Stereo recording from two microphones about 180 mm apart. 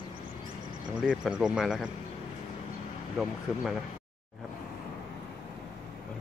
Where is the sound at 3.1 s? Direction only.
Centre (ahead or behind).